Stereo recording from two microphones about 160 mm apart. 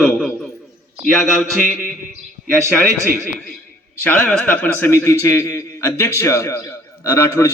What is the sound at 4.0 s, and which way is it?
A man's voice, 10° left (ahead or behind).